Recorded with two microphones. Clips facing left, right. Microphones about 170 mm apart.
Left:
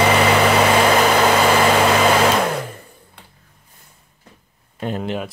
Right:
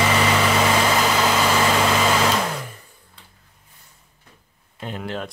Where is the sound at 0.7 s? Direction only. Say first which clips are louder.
Left 5 dB; 60° left (ahead or behind).